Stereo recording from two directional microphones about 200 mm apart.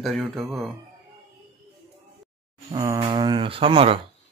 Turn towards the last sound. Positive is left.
turn(degrees=-30)  # may be behind; listen again after turning